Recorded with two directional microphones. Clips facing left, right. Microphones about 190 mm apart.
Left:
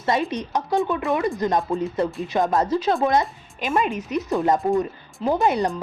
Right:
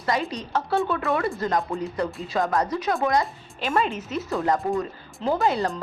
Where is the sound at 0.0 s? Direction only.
25° left (ahead or behind).